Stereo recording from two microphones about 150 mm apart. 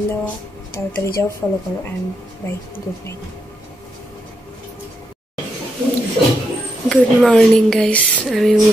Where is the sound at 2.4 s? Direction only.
15° left (ahead or behind).